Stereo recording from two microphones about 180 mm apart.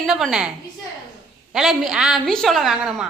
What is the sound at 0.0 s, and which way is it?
Speech, centre (ahead or behind).